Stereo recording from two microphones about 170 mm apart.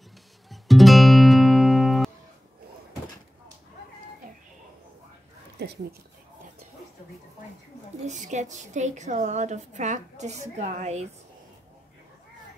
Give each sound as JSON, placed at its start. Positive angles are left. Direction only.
{"t": 0.5, "sound": "music", "side_deg": 0}
{"t": 8.0, "sound": "a woman's voice", "side_deg": -45}